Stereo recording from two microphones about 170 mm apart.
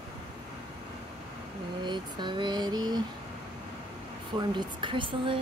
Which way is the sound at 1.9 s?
25° right (ahead or behind).